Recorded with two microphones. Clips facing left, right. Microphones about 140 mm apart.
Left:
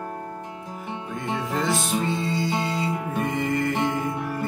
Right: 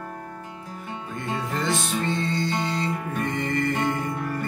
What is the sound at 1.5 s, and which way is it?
Music, centre (ahead or behind).